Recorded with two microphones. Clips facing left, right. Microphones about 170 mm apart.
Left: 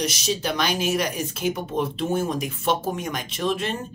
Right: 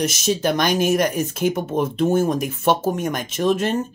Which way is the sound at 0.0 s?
50° right (ahead or behind).